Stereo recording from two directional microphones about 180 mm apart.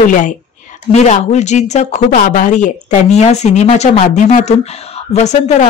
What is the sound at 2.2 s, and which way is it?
Speech, 50° left (ahead or behind).